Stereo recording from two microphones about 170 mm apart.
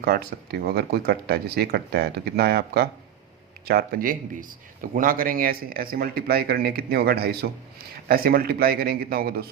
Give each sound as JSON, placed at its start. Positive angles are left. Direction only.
{"t": 0.1, "sound": "speech", "side_deg": -60}